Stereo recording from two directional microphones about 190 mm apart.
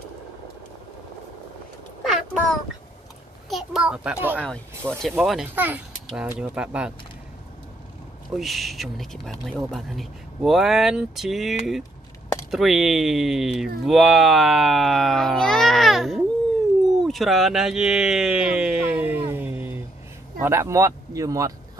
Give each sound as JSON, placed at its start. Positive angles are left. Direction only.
{"t": 2.0, "sound": "a sound", "side_deg": 0}
{"t": 3.4, "sound": "a child's voice", "side_deg": 0}
{"t": 4.4, "sound": "a child's voice", "side_deg": 5}
{"t": 8.3, "sound": "speech", "side_deg": 0}